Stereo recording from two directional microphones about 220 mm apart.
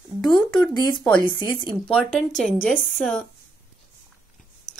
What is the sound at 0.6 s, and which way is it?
Speech, 20° left (ahead or behind).